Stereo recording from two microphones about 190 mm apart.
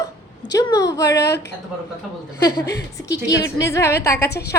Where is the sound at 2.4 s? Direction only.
20° left (ahead or behind).